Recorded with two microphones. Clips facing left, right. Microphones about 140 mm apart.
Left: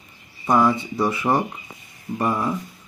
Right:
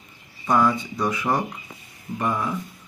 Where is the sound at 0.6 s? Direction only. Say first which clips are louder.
Left 2 dB; 25° left (ahead or behind).